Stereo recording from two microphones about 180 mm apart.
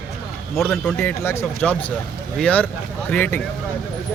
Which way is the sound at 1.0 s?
15° left (ahead or behind).